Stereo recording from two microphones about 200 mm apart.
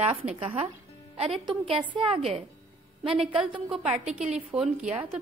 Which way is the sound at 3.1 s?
5° right (ahead or behind).